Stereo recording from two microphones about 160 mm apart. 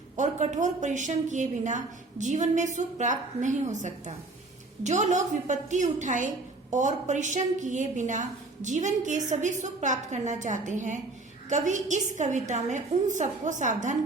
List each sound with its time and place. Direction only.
0.2 s a woman's voice: 50° right (ahead or behind)